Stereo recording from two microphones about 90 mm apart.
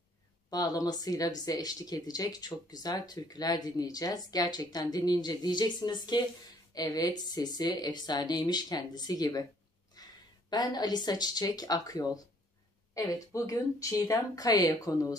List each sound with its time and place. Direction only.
0.5 s speech: 45° left (ahead or behind)
9.9 s a sound: 45° left (ahead or behind)
10.5 s speech: 50° left (ahead or behind)